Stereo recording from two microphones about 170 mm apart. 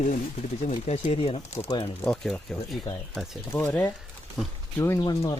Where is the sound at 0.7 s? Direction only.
35° left (ahead or behind).